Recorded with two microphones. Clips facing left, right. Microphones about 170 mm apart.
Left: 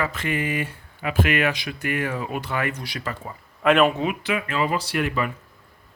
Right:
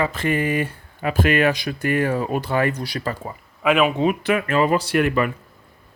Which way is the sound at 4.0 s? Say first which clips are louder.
Right 6 dB; 45° right (ahead or behind).